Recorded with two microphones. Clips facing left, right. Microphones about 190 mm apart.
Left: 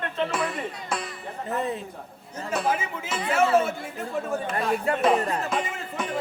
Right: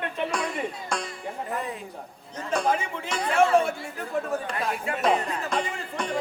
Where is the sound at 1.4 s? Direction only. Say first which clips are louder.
Left 6 dB; 25° left (ahead or behind).